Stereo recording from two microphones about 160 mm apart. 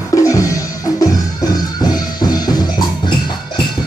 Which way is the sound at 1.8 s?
25° left (ahead or behind).